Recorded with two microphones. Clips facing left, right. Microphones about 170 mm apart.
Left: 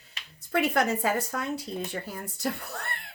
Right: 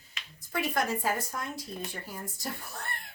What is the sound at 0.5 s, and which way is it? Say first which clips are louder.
Speech: left 5 dB; 65° left (ahead or behind).